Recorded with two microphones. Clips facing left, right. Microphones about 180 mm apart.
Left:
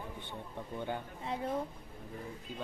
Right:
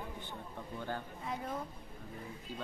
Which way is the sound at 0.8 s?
20° left (ahead or behind).